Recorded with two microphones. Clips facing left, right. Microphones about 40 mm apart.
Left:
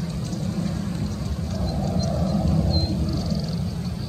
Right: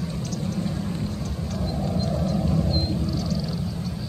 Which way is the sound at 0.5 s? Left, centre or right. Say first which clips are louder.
Even; centre.